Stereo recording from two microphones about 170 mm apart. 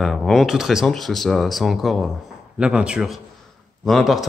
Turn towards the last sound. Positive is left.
turn(degrees=0)  # may be behind; listen again after turning